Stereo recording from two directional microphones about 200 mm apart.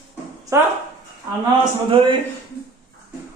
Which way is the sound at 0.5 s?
15° right (ahead or behind).